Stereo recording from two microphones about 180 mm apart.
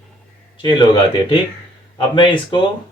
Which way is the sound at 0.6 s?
25° left (ahead or behind).